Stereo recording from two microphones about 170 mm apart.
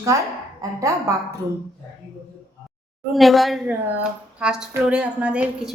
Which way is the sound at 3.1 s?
Centre (ahead or behind).